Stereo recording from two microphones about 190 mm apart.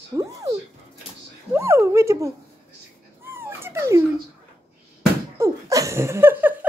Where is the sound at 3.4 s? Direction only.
10° right (ahead or behind).